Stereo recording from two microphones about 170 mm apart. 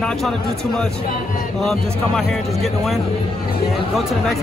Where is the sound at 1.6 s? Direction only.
Centre (ahead or behind).